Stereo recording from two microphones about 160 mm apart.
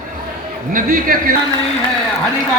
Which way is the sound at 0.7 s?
60° right (ahead or behind).